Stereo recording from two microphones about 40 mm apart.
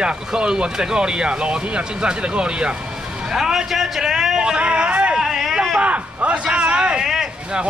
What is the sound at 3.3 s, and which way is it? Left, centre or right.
A man's voice, centre.